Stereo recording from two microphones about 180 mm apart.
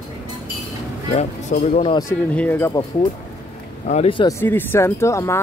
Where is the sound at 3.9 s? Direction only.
30° left (ahead or behind).